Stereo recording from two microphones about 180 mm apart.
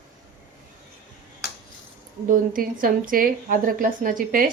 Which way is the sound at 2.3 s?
50° right (ahead or behind).